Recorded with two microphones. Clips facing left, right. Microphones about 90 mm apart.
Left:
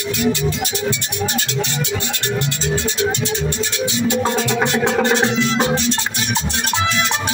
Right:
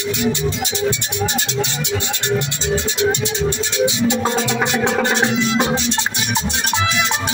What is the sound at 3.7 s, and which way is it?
Music, 20° right (ahead or behind).